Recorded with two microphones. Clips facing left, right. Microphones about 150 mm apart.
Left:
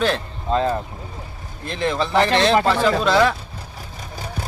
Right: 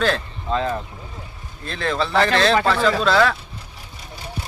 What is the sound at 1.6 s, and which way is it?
Speech, 15° left (ahead or behind).